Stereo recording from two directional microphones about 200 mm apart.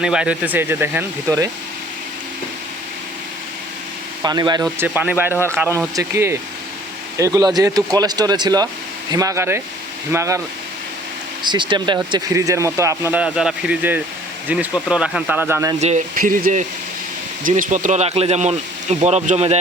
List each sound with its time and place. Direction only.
0.0 s speech: 5° right (ahead or behind)
4.2 s speech: 20° right (ahead or behind)
11.4 s speech: 25° right (ahead or behind)
15.8 s speech: 35° right (ahead or behind)